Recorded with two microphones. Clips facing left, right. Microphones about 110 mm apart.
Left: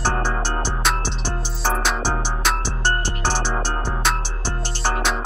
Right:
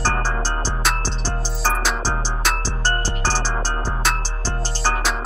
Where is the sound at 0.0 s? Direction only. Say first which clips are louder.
Even; 15° left (ahead or behind).